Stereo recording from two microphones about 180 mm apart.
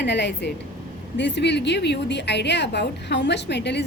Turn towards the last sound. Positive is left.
turn(degrees=70)  # may be behind; listen again after turning